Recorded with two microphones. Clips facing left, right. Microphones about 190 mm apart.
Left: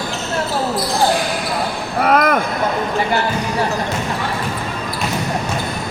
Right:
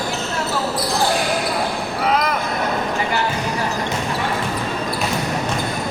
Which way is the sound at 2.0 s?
55° left (ahead or behind).